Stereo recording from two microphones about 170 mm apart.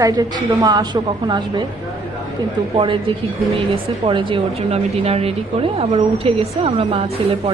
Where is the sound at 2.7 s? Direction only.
30° right (ahead or behind).